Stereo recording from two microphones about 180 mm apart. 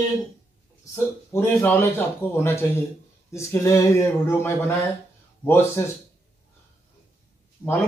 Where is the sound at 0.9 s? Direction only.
10° left (ahead or behind).